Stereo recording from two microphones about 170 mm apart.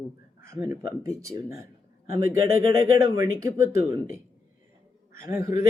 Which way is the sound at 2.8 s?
20° right (ahead or behind).